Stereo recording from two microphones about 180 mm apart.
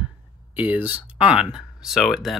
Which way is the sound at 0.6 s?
10° right (ahead or behind).